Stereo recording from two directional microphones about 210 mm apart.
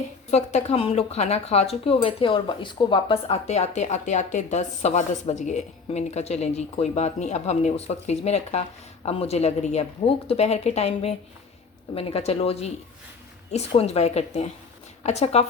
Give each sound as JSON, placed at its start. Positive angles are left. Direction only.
{"t": 0.3, "sound": "a woman's voice", "side_deg": 30}